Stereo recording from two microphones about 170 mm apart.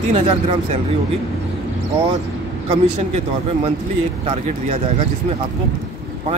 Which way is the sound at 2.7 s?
40° right (ahead or behind).